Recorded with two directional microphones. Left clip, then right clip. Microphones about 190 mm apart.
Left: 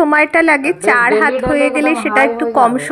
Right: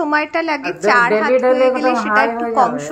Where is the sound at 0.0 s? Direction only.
20° left (ahead or behind).